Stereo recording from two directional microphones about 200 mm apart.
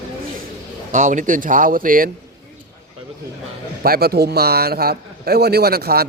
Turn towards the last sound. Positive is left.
turn(degrees=-50)  # may be behind; listen again after turning